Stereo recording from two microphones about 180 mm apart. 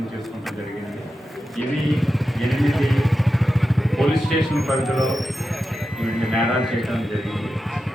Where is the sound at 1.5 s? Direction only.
Centre (ahead or behind).